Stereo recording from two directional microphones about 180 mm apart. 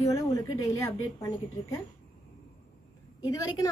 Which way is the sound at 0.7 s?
15° left (ahead or behind).